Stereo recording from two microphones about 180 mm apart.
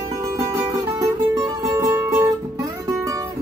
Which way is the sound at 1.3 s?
20° right (ahead or behind).